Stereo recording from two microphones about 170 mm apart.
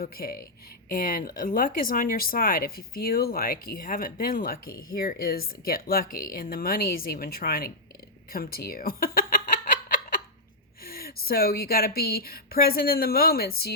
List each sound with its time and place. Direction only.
0.0 s speech: 60° left (ahead or behind)
8.3 s fowl: 60° left (ahead or behind)
10.8 s speech: 60° left (ahead or behind)